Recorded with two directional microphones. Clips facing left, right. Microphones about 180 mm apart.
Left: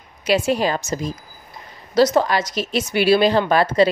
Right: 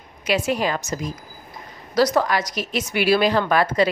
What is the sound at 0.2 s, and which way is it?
A woman's voice, 30° left (ahead or behind).